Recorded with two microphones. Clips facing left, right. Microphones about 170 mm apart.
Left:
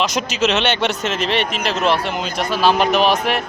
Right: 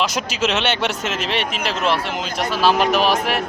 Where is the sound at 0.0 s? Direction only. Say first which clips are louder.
Left 2 dB; 5° right (ahead or behind).